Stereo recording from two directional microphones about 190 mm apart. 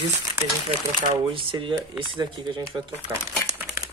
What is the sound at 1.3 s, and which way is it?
Speech, 25° right (ahead or behind).